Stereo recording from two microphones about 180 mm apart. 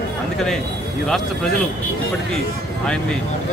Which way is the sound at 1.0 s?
5° left (ahead or behind).